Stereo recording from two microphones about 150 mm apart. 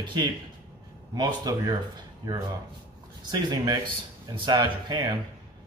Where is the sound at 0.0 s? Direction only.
30° right (ahead or behind).